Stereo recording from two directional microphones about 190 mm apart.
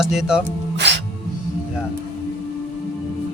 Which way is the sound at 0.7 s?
65° right (ahead or behind).